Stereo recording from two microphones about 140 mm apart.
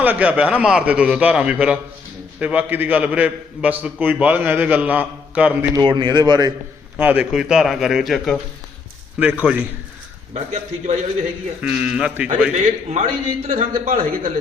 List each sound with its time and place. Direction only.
0.0 s a man's voice: 10° right (ahead or behind)
5.7 s a man's voice: 35° right (ahead or behind)
7.0 s a man's voice: 10° right (ahead or behind)
9.1 s a man's voice: 10° right (ahead or behind)
10.3 s a man's voice: 55° right (ahead or behind)
11.6 s a man's voice: 5° right (ahead or behind)
12.5 s a man's voice: 50° right (ahead or behind)
13.5 s a man's voice: 70° right (ahead or behind)